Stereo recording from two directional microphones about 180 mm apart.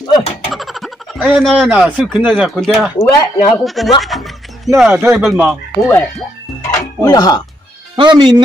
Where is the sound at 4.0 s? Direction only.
Centre (ahead or behind).